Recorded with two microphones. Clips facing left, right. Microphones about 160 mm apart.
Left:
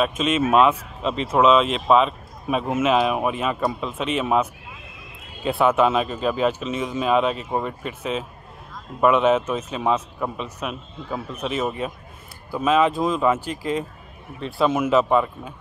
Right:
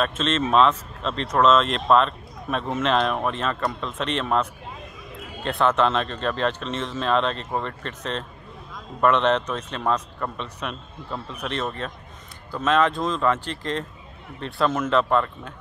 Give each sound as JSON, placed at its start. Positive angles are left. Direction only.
{"t": 0.0, "sound": "speech", "side_deg": 10}